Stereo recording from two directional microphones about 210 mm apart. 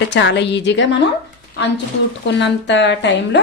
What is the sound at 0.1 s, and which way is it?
Speech, 55° left (ahead or behind).